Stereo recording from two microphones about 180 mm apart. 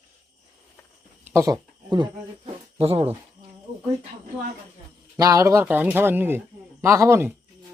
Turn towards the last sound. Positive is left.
turn(degrees=-15)  # may be behind; listen again after turning